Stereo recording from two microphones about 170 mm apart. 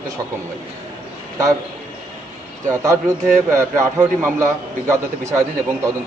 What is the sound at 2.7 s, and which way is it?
A man's voice, 20° right (ahead or behind).